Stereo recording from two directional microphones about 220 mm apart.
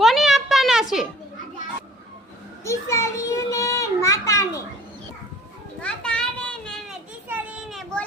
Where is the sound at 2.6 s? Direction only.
15° left (ahead or behind).